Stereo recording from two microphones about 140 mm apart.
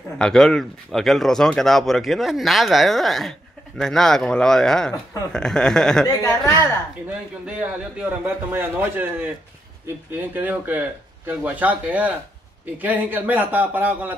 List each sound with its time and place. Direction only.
0.2 s speech: 5° left (ahead or behind)
6.0 s speech: 25° left (ahead or behind)
7.4 s a man's voice: 10° right (ahead or behind)
10.3 s a man's voice: 15° right (ahead or behind)